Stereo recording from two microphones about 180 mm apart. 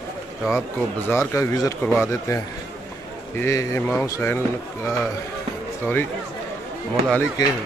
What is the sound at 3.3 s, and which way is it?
A man's voice, 15° left (ahead or behind).